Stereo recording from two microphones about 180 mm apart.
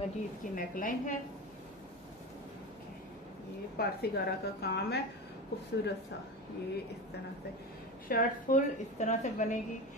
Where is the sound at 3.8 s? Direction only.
60° left (ahead or behind).